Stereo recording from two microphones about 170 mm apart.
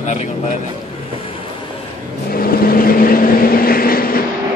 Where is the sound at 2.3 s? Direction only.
60° left (ahead or behind).